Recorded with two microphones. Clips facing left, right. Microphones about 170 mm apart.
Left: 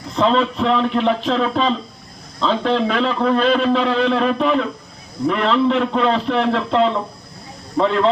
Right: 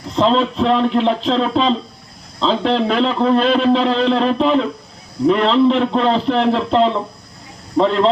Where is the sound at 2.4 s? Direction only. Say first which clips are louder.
Right 1 dB; 30° right (ahead or behind).